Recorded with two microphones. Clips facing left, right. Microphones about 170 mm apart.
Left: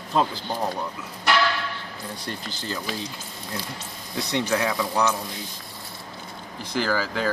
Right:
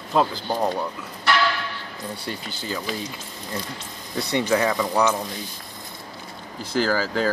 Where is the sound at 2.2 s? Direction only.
10° right (ahead or behind).